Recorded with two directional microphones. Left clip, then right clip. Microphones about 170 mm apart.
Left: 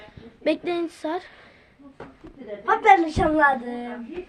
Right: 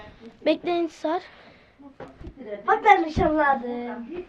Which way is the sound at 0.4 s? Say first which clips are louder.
Right 1 dB; 20° left (ahead or behind).